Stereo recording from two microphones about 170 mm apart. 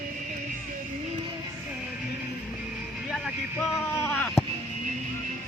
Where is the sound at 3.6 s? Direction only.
15° left (ahead or behind).